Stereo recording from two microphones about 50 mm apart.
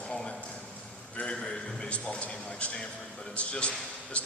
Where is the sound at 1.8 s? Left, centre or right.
Left.